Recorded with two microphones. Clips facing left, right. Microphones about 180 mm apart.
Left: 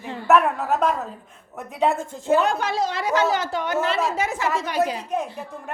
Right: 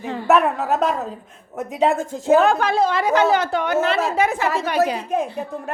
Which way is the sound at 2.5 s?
55° right (ahead or behind).